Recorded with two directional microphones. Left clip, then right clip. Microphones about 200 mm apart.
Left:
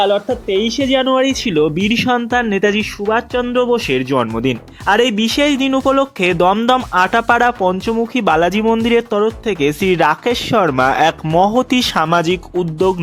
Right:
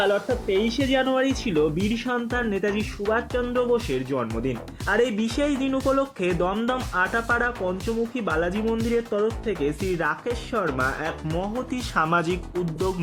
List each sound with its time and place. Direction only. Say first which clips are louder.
0.0 s speech: left 8 dB; 25° left (ahead or behind)